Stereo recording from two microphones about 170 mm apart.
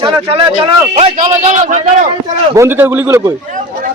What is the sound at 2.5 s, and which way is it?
Speech, 15° right (ahead or behind).